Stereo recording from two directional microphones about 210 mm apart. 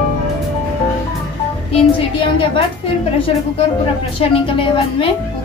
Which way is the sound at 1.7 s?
25° left (ahead or behind).